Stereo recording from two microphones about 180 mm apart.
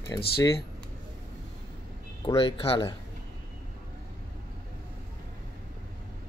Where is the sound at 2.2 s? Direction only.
30° left (ahead or behind).